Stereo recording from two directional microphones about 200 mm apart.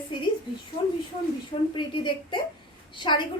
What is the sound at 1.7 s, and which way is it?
A woman's voice, 25° left (ahead or behind).